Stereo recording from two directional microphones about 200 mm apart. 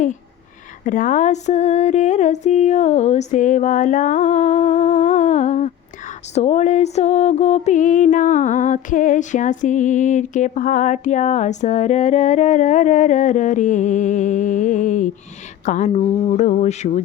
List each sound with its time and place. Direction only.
0.9 s music: 40° left (ahead or behind)